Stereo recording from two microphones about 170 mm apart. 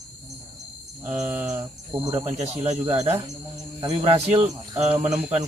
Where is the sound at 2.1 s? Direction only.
20° right (ahead or behind).